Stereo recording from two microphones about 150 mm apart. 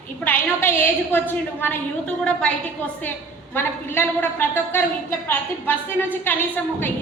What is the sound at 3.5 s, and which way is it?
A woman's voice, 15° left (ahead or behind).